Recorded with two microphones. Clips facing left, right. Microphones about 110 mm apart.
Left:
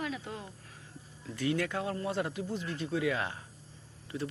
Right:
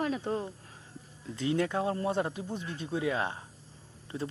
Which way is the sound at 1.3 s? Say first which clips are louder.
Right 2 dB; 25° right (ahead or behind).